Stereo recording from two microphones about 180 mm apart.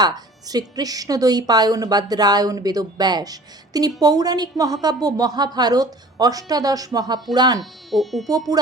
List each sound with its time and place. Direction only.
0.0 s speech: 20° right (ahead or behind)
7.6 s speech: centre (ahead or behind)